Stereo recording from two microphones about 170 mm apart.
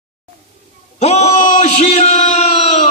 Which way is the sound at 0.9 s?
40° left (ahead or behind).